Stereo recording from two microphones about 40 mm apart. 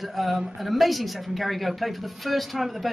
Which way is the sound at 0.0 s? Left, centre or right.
Centre.